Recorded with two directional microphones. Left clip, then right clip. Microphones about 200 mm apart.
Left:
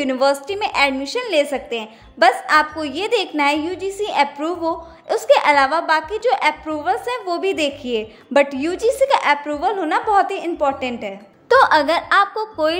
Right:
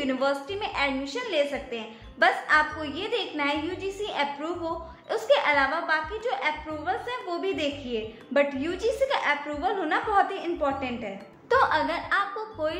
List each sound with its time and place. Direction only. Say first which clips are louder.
0.0 s a woman's voice: left 9 dB; 45° left (ahead or behind)